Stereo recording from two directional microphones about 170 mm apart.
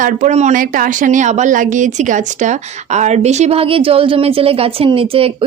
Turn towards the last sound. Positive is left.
turn(degrees=-35)  # may be behind; listen again after turning